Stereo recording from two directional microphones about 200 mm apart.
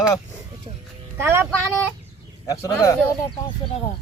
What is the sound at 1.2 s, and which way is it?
Speech, 10° right (ahead or behind).